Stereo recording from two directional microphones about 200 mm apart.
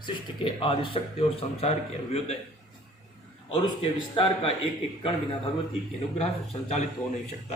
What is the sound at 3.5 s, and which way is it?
A man's voice, 25° left (ahead or behind).